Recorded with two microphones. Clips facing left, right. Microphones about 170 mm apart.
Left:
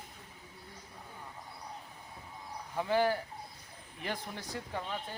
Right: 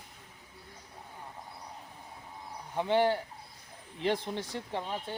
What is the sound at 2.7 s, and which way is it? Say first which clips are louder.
Speech: right 3 dB; 25° right (ahead or behind).